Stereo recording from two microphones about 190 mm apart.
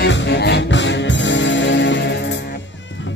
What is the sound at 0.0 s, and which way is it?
Music, 65° left (ahead or behind).